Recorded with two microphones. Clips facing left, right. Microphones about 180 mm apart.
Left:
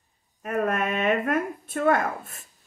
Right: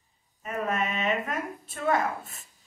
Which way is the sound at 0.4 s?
55° left (ahead or behind).